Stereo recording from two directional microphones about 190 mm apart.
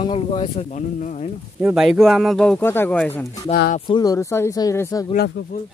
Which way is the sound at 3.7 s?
25° left (ahead or behind).